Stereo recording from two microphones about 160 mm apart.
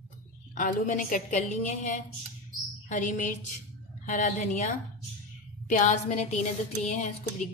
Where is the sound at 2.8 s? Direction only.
50° left (ahead or behind).